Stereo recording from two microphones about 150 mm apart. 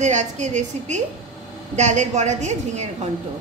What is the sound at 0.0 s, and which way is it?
A woman's voice, 50° right (ahead or behind).